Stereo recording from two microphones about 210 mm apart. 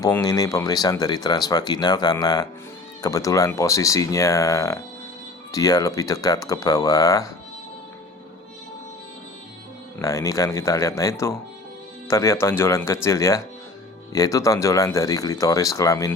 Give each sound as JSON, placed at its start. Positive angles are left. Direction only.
{"t": 0.0, "sound": "speech", "side_deg": 15}
{"t": 10.0, "sound": "speech", "side_deg": 15}